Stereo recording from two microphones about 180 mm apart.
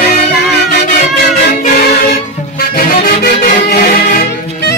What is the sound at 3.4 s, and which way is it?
Music, 55° left (ahead or behind).